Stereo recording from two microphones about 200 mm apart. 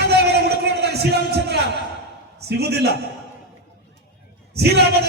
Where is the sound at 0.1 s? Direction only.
55° right (ahead or behind).